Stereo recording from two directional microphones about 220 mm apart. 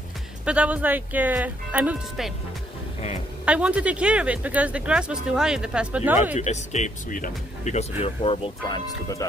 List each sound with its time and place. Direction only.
0.5 s speech: 5° right (ahead or behind)
3.4 s speech: 5° right (ahead or behind)
6.3 s speech: 30° left (ahead or behind)